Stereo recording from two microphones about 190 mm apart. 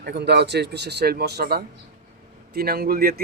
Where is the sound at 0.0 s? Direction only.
60° right (ahead or behind).